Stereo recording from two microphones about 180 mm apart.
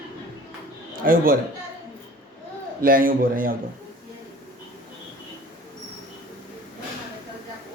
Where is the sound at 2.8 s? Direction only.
50° right (ahead or behind).